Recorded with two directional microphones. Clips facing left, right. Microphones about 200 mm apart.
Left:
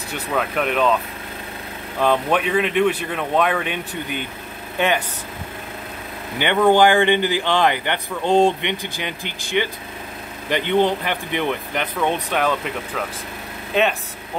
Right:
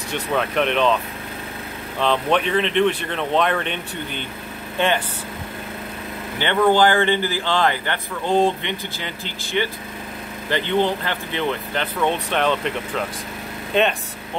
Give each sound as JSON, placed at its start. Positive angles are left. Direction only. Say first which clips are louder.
{"t": 0.1, "sound": "speech", "louder": "right 1 dB", "side_deg": 5}
{"t": 2.0, "sound": "a man's voice", "louder": "left 1 dB", "side_deg": 5}
{"t": 6.4, "sound": "a man's voice", "louder": "left 2 dB", "side_deg": 15}
{"t": 13.7, "sound": "speech", "louder": "even", "side_deg": 5}